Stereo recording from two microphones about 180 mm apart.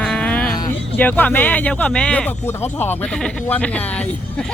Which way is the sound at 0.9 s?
10° left (ahead or behind).